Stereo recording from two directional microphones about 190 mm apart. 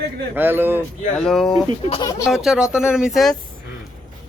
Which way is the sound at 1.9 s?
20° left (ahead or behind).